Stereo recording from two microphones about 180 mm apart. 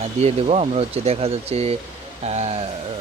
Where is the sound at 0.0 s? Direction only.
35° right (ahead or behind).